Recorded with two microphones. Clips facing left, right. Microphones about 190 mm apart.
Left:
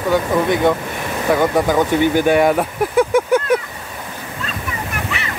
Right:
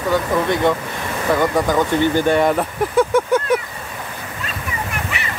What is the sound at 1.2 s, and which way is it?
Speech, 10° left (ahead or behind).